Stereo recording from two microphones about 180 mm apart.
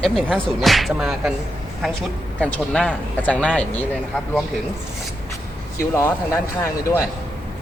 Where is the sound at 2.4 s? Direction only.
5° left (ahead or behind).